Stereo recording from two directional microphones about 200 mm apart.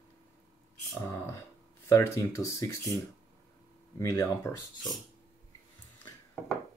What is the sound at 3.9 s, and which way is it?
Speech, 15° left (ahead or behind).